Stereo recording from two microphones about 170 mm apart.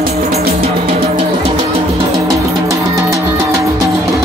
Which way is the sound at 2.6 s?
20° right (ahead or behind).